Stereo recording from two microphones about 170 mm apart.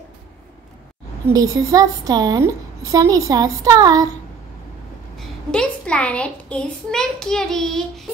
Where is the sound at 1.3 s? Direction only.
20° right (ahead or behind).